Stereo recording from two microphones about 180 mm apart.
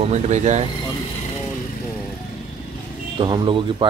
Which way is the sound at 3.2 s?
25° right (ahead or behind).